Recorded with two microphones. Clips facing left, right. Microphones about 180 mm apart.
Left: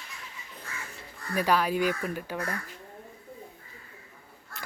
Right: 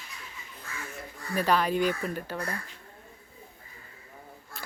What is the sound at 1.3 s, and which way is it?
Speech, 10° left (ahead or behind).